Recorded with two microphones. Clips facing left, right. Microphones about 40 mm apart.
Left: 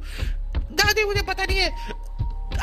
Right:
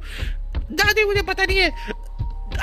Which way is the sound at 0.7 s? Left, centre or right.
Right.